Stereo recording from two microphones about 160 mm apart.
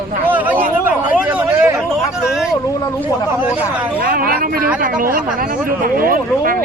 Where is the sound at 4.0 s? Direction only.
65° right (ahead or behind).